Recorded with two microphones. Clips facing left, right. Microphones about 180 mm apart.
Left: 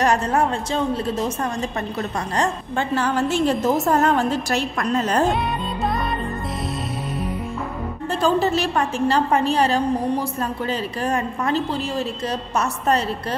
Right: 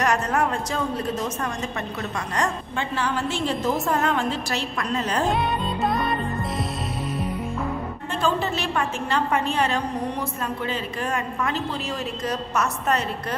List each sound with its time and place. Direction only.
0.0 s a woman's voice: 30° left (ahead or behind)
2.9 s a woman's voice: 45° left (ahead or behind)
8.2 s a woman's voice: 40° left (ahead or behind)